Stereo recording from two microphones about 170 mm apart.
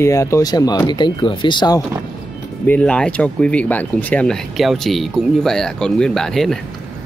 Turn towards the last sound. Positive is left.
turn(degrees=0)  # may be behind; listen again after turning